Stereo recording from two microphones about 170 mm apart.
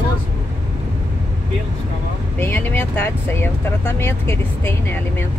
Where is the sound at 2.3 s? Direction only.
10° left (ahead or behind).